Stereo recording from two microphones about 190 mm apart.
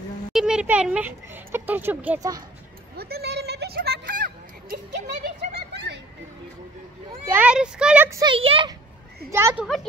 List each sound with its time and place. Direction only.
0.3 s speech: 5° right (ahead or behind)
3.0 s a sound: 55° right (ahead or behind)
5.2 s a sound: 60° right (ahead or behind)
7.2 s speech: 10° right (ahead or behind)
8.3 s speech: 30° right (ahead or behind)
9.3 s speech: 15° right (ahead or behind)